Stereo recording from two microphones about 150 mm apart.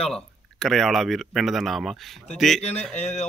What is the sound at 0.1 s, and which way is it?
Speech, centre (ahead or behind).